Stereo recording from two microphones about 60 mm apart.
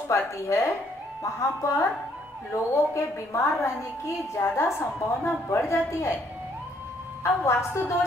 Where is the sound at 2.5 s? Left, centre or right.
Left.